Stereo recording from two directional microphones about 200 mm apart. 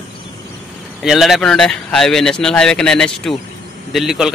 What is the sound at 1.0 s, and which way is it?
Speech, centre (ahead or behind).